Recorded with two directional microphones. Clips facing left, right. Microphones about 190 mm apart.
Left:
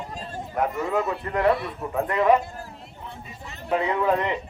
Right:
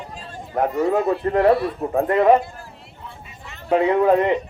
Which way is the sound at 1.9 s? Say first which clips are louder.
Right 4 dB; 40° right (ahead or behind).